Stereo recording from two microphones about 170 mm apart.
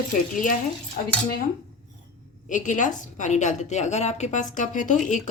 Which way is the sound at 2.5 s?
50° left (ahead or behind).